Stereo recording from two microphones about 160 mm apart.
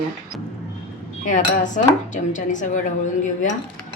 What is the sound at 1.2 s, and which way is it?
A woman's voice, 50° left (ahead or behind).